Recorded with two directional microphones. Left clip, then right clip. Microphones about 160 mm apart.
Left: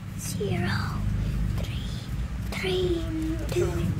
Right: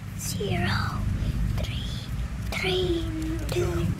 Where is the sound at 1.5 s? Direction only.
Centre (ahead or behind).